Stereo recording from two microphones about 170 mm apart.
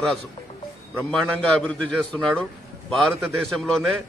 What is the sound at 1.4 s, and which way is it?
A man's voice, 5° left (ahead or behind).